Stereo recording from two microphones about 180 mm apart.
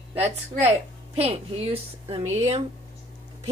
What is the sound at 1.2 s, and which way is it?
A woman's voice, 35° right (ahead or behind).